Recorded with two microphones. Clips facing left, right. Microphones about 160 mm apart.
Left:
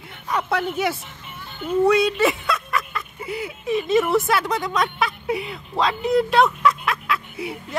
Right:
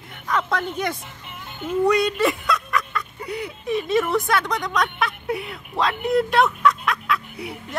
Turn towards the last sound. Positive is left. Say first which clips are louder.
# left 2 dB
turn(degrees=0)  # may be behind; listen again after turning